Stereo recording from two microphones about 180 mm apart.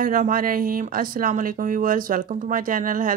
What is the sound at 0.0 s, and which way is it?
Speech, 50° right (ahead or behind).